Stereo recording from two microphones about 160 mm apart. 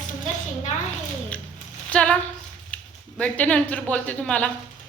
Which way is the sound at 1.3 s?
10° left (ahead or behind).